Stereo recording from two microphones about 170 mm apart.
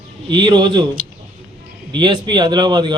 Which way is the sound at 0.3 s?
25° right (ahead or behind).